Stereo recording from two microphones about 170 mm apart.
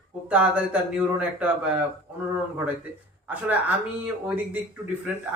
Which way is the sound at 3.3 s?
10° right (ahead or behind).